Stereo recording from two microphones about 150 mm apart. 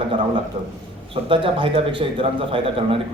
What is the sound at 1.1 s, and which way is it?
A man's voice, 35° right (ahead or behind).